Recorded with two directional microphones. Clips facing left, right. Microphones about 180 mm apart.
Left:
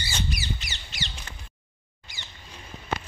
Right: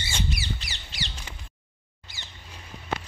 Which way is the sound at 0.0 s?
25° right (ahead or behind).